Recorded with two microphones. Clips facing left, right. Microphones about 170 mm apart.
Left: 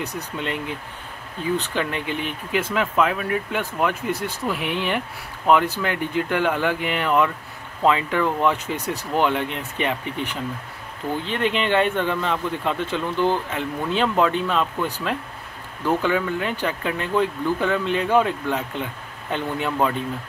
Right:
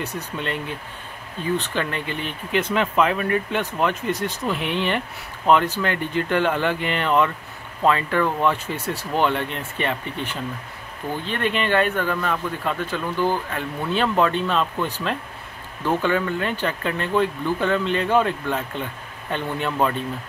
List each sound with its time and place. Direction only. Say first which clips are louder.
1.6 s a man's voice: left 1 dB; 15° left (ahead or behind)